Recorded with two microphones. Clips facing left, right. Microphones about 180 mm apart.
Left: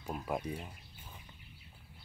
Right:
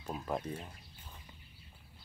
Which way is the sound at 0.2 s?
10° left (ahead or behind).